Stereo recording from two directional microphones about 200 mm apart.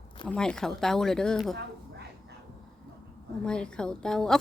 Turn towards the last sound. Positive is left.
turn(degrees=5)  # may be behind; listen again after turning